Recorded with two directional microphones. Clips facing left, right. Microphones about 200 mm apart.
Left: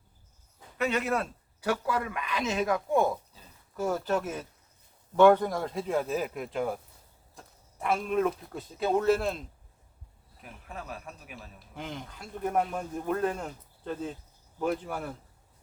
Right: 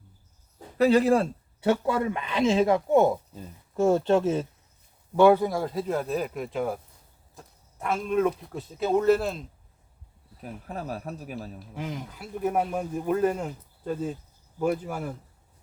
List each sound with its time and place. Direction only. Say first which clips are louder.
0.8 s speech: right 9 dB; 35° right (ahead or behind)
5.1 s speech: right 2 dB; 10° right (ahead or behind)
10.4 s speech: right 7 dB; 40° right (ahead or behind)
11.7 s speech: right 3 dB; 5° right (ahead or behind)